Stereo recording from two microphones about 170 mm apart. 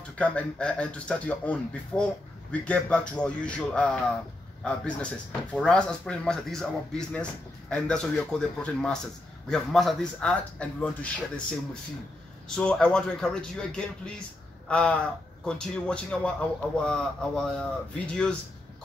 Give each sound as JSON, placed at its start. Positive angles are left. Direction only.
{"t": 0.2, "sound": "a man's voice", "side_deg": 10}
{"t": 12.4, "sound": "a man's voice", "side_deg": 5}